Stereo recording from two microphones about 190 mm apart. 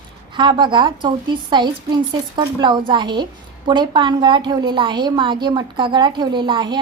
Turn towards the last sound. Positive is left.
turn(degrees=-25)  # may be behind; listen again after turning